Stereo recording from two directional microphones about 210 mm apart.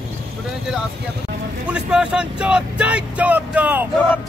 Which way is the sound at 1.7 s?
5° right (ahead or behind).